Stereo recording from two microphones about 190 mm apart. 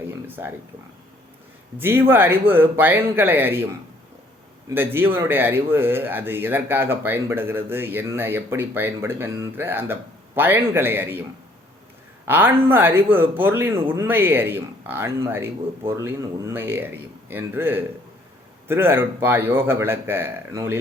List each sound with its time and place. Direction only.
0.3 s speech: 10° right (ahead or behind)
1.8 s speech: 10° right (ahead or behind)
4.7 s speech: 10° right (ahead or behind)
12.3 s speech: 10° right (ahead or behind)